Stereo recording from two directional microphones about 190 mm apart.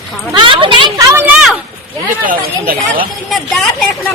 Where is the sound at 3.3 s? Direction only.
Centre (ahead or behind).